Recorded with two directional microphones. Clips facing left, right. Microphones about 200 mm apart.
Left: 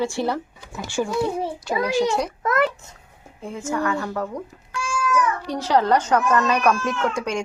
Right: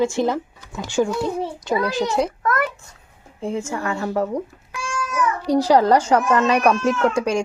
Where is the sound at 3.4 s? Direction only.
25° right (ahead or behind).